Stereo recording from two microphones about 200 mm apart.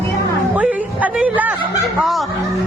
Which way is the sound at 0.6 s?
5° right (ahead or behind).